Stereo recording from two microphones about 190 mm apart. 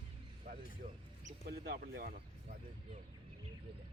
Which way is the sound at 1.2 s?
55° right (ahead or behind).